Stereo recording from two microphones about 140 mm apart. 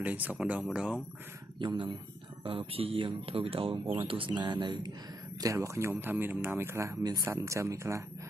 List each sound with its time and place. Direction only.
0.0 s speech: 10° right (ahead or behind)
1.6 s speech: 35° right (ahead or behind)